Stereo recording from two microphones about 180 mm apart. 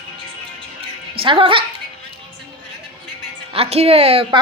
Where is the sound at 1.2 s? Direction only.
30° right (ahead or behind).